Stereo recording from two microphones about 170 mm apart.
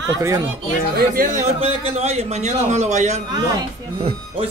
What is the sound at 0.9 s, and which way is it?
Speech, 55° right (ahead or behind).